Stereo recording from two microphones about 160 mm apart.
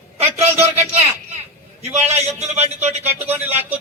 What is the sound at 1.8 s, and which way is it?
A man's voice, 45° right (ahead or behind).